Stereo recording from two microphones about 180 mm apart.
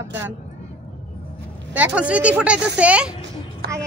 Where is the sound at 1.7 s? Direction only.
10° right (ahead or behind).